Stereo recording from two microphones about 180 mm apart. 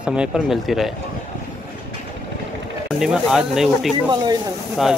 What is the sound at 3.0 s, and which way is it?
Speech, 5° right (ahead or behind).